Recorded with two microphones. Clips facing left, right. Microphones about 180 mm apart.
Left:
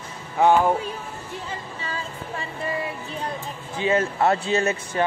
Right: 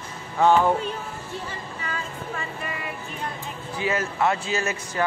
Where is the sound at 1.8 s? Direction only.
30° left (ahead or behind).